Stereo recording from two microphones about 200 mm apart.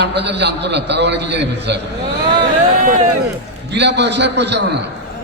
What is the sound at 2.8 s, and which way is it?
Speech, 35° right (ahead or behind).